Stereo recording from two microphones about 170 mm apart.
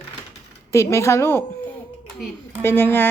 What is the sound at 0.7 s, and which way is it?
A woman's voice, 15° left (ahead or behind).